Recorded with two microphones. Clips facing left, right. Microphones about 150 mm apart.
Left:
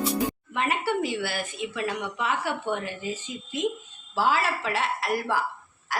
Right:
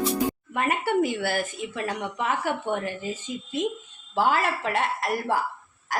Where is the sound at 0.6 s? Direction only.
50° right (ahead or behind).